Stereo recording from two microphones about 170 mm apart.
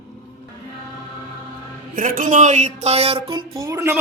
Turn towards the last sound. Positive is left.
turn(degrees=-15)  # may be behind; listen again after turning